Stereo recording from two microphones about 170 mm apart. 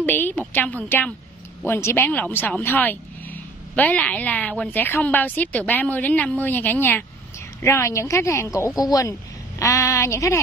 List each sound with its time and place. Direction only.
0.0 s a woman's voice: 10° left (ahead or behind)